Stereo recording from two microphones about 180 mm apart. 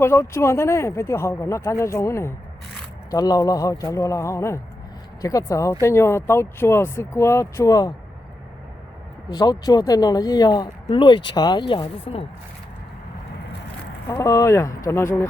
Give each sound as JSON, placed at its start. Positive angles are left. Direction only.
{"t": 0.0, "sound": "speech", "side_deg": 15}
{"t": 9.3, "sound": "speech", "side_deg": 20}
{"t": 14.1, "sound": "speech", "side_deg": 15}